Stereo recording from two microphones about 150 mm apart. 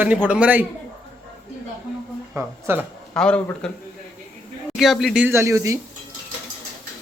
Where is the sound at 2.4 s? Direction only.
15° right (ahead or behind).